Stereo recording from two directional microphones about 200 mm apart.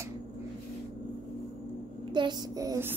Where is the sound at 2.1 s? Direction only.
20° right (ahead or behind).